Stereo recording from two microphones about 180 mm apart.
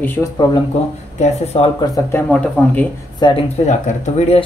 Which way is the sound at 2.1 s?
10° left (ahead or behind).